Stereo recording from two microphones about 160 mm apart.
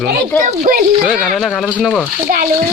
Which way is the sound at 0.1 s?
60° right (ahead or behind).